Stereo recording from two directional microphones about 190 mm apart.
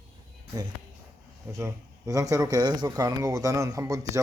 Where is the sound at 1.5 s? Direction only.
15° right (ahead or behind).